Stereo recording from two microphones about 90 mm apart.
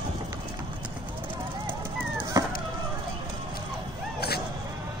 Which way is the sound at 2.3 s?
45° right (ahead or behind).